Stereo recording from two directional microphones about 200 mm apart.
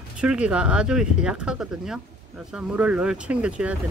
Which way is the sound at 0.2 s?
5° right (ahead or behind).